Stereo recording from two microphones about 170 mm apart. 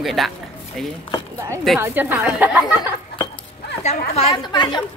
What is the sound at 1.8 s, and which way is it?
Speech, 10° right (ahead or behind).